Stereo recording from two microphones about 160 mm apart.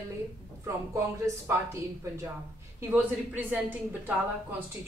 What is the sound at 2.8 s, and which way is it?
A woman's voice, 10° right (ahead or behind).